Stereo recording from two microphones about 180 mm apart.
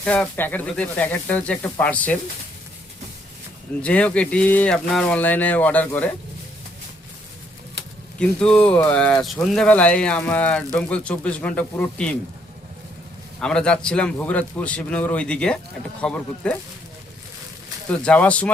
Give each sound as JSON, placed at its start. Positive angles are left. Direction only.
{"t": 0.0, "sound": "speech", "side_deg": 5}
{"t": 3.8, "sound": "speech", "side_deg": 5}
{"t": 8.2, "sound": "a man's voice", "side_deg": 5}
{"t": 13.4, "sound": "a man's voice", "side_deg": 5}
{"t": 18.0, "sound": "speech", "side_deg": 5}